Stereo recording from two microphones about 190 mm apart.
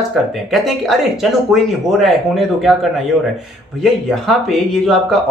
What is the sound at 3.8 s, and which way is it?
Speech, centre (ahead or behind).